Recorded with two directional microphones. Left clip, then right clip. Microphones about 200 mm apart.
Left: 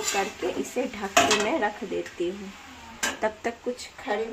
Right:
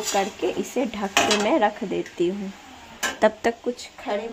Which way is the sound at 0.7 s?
40° right (ahead or behind).